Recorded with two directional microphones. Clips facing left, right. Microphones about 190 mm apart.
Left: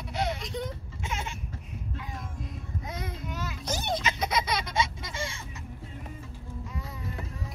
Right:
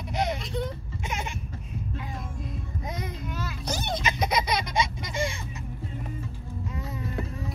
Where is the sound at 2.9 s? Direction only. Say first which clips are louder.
Right 3 dB; 15° right (ahead or behind).